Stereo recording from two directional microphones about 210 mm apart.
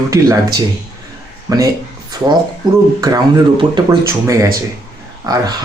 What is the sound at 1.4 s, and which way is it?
Speech, 15° right (ahead or behind).